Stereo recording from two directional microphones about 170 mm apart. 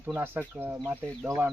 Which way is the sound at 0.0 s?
10° right (ahead or behind).